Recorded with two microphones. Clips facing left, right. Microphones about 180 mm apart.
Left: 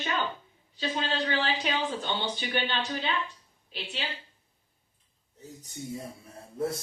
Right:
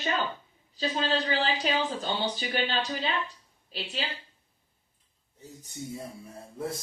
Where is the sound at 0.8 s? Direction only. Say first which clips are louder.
Right 2 dB; 35° right (ahead or behind).